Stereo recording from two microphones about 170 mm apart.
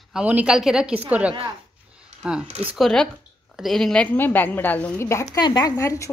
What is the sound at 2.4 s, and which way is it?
Speech, 35° right (ahead or behind).